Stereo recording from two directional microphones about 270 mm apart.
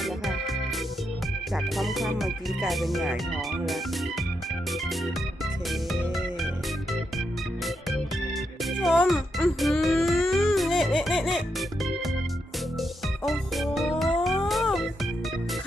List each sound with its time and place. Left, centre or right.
0.0 s music: centre
1.5 s speech: centre
5.9 s music: centre
8.6 s music: centre
13.2 s music: centre